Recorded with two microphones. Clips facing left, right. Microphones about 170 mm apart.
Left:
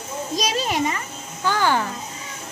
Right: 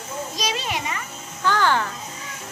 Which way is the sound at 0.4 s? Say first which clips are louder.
Left 6 dB; 40° left (ahead or behind).